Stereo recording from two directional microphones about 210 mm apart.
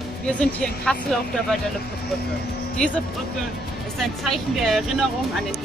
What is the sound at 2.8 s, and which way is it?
Speech, 5° left (ahead or behind).